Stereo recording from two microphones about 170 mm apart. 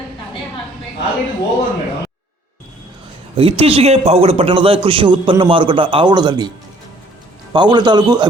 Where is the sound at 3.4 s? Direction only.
35° right (ahead or behind).